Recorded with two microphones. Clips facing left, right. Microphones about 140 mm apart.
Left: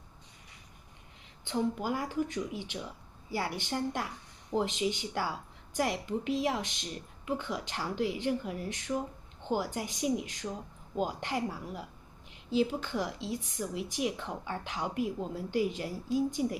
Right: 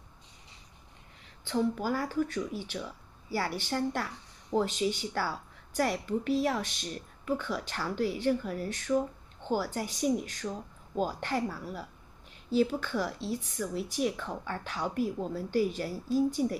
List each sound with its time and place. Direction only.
1.4 s a woman's voice: 20° left (ahead or behind)